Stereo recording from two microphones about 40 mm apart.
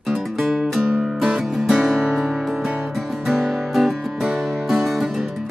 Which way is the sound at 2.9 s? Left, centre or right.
Centre.